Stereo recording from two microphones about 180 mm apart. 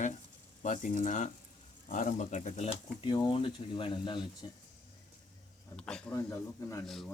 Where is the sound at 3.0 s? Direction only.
25° left (ahead or behind).